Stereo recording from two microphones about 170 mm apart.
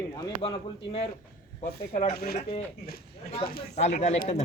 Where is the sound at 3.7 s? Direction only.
40° left (ahead or behind).